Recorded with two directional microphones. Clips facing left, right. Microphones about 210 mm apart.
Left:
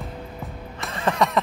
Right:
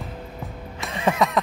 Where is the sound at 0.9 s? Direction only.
10° right (ahead or behind).